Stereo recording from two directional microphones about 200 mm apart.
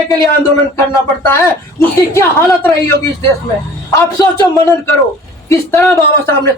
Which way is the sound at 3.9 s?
15° left (ahead or behind).